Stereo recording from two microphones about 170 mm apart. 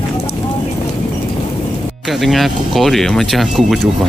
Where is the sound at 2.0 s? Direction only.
Centre (ahead or behind).